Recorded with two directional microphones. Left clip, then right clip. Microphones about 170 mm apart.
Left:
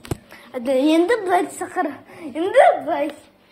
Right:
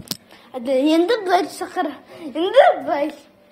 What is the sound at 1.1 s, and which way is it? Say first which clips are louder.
Speech: right 1 dB; 35° right (ahead or behind).